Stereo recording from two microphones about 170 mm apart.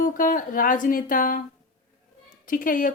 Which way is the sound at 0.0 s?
55° left (ahead or behind).